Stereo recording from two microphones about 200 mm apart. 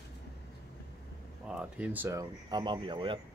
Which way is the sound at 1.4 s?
5° right (ahead or behind).